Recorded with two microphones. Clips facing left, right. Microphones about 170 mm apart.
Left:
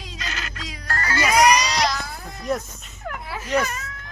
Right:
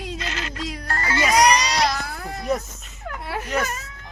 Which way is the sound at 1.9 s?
55° right (ahead or behind).